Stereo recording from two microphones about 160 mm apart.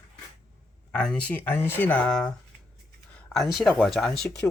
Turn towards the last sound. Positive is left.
turn(degrees=5)  # may be behind; listen again after turning